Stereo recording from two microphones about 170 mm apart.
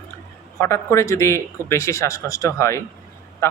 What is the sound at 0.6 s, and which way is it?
A man's voice, 15° left (ahead or behind).